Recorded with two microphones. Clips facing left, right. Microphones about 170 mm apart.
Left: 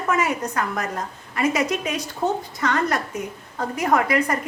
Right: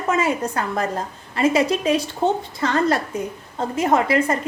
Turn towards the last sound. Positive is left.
turn(degrees=-25)  # may be behind; listen again after turning